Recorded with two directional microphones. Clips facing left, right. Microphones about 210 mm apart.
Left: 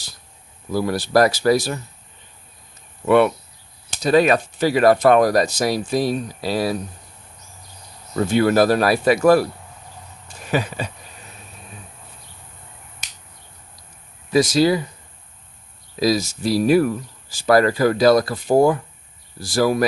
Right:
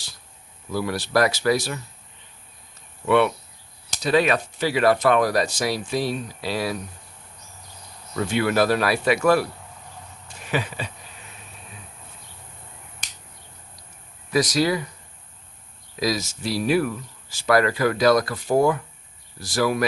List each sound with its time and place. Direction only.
0.7 s speech: 40° left (ahead or behind)
4.0 s speech: 40° left (ahead or behind)
8.1 s speech: 40° left (ahead or behind)
14.3 s speech: 25° left (ahead or behind)
16.0 s speech: 30° left (ahead or behind)